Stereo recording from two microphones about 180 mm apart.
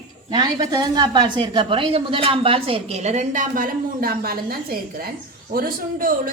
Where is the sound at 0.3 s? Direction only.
25° right (ahead or behind).